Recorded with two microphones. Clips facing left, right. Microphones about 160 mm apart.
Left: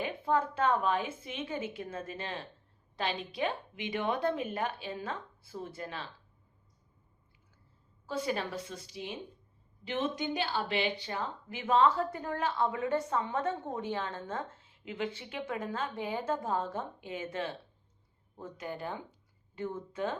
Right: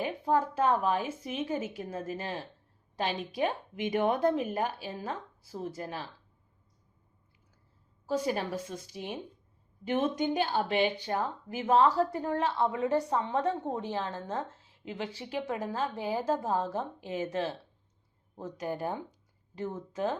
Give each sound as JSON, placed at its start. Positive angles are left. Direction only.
{"t": 0.0, "sound": "a woman's voice", "side_deg": -40}
{"t": 8.0, "sound": "a woman's voice", "side_deg": -40}
{"t": 14.2, "sound": "speech", "side_deg": 0}
{"t": 14.8, "sound": "a woman's voice", "side_deg": -35}